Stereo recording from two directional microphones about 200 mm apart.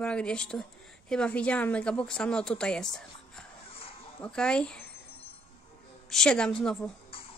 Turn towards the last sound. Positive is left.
turn(degrees=0)  # may be behind; listen again after turning